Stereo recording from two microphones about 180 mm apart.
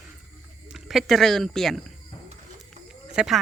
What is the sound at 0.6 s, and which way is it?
Speech, centre (ahead or behind).